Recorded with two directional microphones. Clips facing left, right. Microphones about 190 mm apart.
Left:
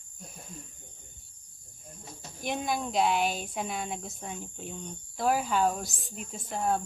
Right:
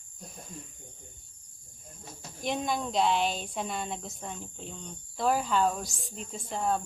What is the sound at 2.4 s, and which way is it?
Speech, 5° left (ahead or behind).